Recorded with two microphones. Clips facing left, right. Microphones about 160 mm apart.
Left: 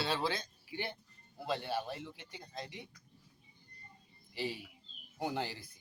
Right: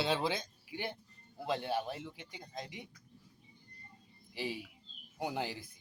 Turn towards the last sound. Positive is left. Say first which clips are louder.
# even
turn(degrees=-15)  # may be behind; listen again after turning